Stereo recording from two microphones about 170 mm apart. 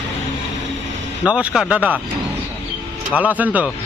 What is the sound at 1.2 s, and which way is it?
Speech, 5° right (ahead or behind).